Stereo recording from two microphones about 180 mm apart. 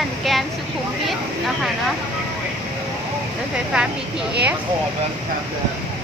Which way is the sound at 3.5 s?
5° right (ahead or behind).